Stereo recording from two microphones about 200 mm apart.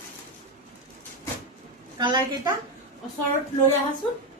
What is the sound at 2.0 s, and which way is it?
Speech, 20° right (ahead or behind).